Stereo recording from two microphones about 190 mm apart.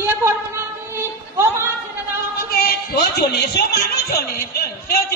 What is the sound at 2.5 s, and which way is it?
A man's voice, 55° left (ahead or behind).